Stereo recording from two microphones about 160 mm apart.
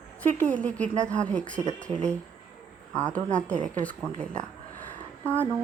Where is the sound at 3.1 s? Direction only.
50° right (ahead or behind).